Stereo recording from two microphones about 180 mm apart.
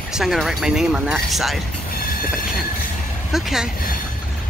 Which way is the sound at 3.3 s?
Centre (ahead or behind).